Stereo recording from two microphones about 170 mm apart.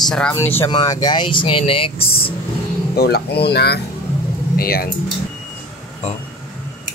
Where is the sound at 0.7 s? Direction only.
25° left (ahead or behind).